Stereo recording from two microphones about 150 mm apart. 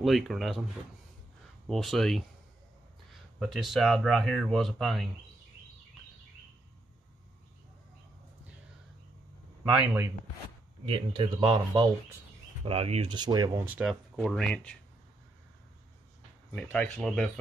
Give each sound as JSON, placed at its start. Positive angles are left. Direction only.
{"t": 0.0, "sound": "speech", "side_deg": 0}
{"t": 1.7, "sound": "speech", "side_deg": 0}
{"t": 9.8, "sound": "speech", "side_deg": -15}
{"t": 10.9, "sound": "speech", "side_deg": -35}
{"t": 13.7, "sound": "speech", "side_deg": -5}
{"t": 16.5, "sound": "speech", "side_deg": 5}